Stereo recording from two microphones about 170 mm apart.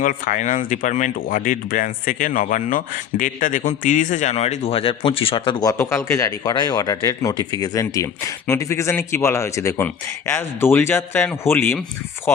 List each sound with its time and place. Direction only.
0.0 s speech: 50° left (ahead or behind); by 11.8 s 15° left (ahead or behind)